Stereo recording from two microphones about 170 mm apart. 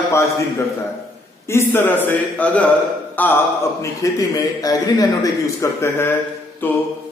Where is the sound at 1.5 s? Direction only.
15° left (ahead or behind).